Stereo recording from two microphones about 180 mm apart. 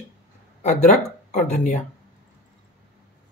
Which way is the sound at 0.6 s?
40° left (ahead or behind).